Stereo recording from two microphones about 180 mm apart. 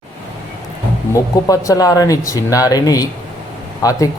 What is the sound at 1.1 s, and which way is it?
Speech, 20° left (ahead or behind).